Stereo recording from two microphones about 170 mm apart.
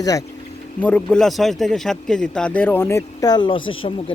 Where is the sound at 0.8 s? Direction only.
5° left (ahead or behind).